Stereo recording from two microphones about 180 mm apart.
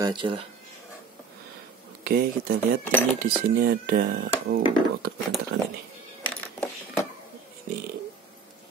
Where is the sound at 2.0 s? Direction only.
55° right (ahead or behind).